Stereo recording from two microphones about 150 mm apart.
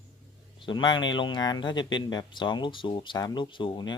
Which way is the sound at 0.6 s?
30° left (ahead or behind).